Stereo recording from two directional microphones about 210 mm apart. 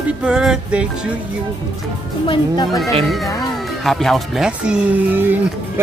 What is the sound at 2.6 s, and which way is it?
Speech, centre (ahead or behind).